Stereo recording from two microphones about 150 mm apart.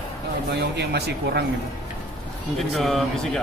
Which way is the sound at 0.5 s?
90° right.